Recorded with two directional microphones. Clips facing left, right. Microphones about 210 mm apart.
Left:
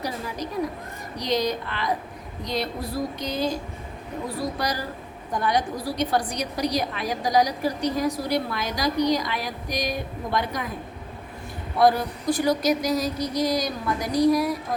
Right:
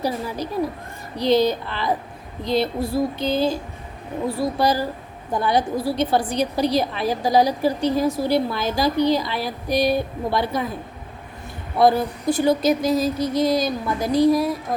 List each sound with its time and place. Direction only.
0.0 s a woman's voice: 30° right (ahead or behind)
11.8 s a woman's voice: 25° right (ahead or behind)